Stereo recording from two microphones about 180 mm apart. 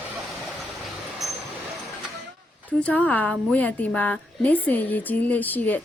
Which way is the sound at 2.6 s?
10° left (ahead or behind).